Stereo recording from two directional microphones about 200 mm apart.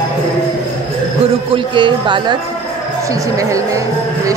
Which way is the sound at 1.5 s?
25° right (ahead or behind).